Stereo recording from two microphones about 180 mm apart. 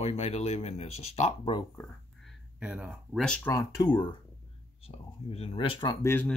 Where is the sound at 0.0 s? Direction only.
35° left (ahead or behind).